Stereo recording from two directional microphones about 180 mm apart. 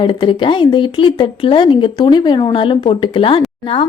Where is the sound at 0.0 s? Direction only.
25° left (ahead or behind).